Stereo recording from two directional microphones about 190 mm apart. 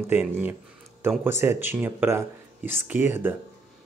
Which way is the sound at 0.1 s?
10° right (ahead or behind).